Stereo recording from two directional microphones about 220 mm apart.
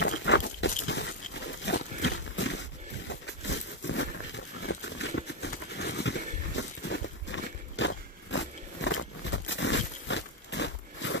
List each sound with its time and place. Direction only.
0.2 s pig: 55° left (ahead or behind)
0.8 s crunch: 55° left (ahead or behind)
1.7 s a sound: 55° left (ahead or behind)